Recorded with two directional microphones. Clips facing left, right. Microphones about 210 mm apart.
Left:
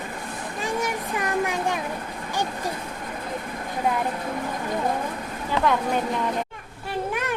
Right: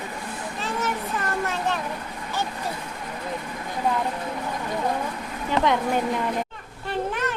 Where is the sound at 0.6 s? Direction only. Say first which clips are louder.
Left 1 dB; 15° left (ahead or behind).